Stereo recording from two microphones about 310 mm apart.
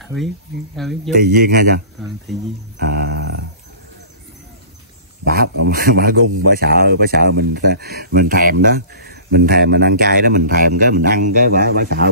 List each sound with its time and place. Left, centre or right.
0.0 s speech: centre
1.1 s speech: right
2.0 s speech: centre
2.8 s music: right
5.2 s a man's voice: right